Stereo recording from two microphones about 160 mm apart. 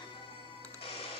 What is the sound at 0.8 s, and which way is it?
Printer, 35° left (ahead or behind).